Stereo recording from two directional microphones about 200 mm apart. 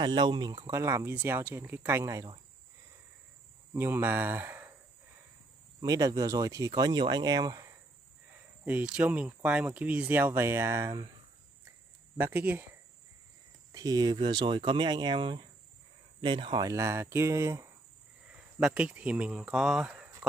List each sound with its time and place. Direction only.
0.0 s speech: 20° right (ahead or behind)
3.7 s speech: 10° right (ahead or behind)
5.8 s speech: 20° right (ahead or behind)
12.2 s speech: 10° right (ahead or behind)
13.7 s speech: 20° right (ahead or behind)